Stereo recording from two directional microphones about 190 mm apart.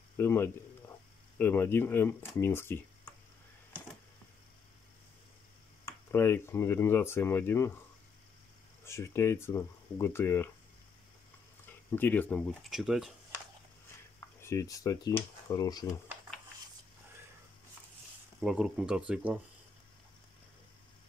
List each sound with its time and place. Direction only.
0.2 s speech: 10° left (ahead or behind)
5.9 s speech: 15° left (ahead or behind)
8.8 s speech: 15° left (ahead or behind)
11.9 s speech: 10° left (ahead or behind)
14.4 s speech: 15° left (ahead or behind)
18.4 s speech: 5° right (ahead or behind)